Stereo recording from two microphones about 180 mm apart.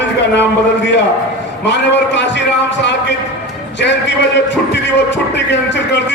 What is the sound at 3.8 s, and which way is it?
Music, 75° left (ahead or behind).